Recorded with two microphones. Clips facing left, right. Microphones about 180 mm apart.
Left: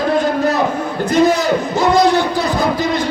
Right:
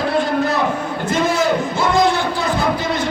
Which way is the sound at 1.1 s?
40° left (ahead or behind).